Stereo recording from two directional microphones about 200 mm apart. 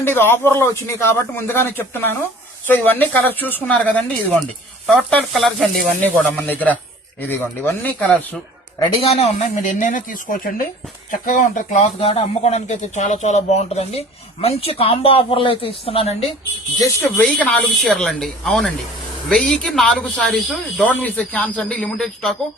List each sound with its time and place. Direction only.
0.0 s speech: 10° left (ahead or behind)
9.0 s speech: 30° left (ahead or behind)
17.2 s speech: 5° left (ahead or behind)